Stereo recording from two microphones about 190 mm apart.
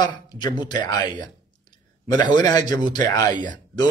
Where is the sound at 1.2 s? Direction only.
20° left (ahead or behind).